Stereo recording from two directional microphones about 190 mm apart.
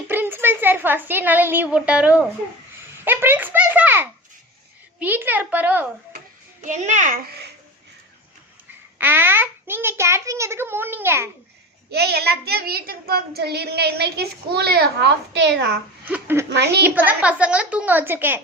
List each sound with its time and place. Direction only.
0.1 s a woman's voice: 10° right (ahead or behind)
6.7 s a child's voice: 40° right (ahead or behind); by 7.5 s 55° right (ahead or behind)
9.0 s a child's voice: 10° right (ahead or behind)
11.9 s a child's voice: 60° right (ahead or behind)
16.0 s a child's voice: 10° right (ahead or behind)
16.5 s a child's voice: 60° right (ahead or behind)
16.8 s a child's voice: 10° right (ahead or behind)